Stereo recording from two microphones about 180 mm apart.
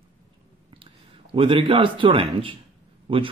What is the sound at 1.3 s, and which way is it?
A man's voice, 30° right (ahead or behind).